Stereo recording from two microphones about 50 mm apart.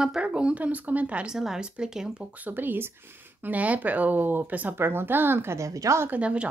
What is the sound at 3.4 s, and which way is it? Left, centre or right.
Speech, right.